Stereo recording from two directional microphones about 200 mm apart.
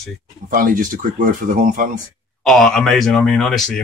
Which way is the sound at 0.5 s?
45° right (ahead or behind).